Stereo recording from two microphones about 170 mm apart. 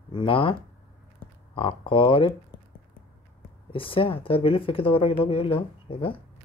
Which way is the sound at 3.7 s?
30° left (ahead or behind).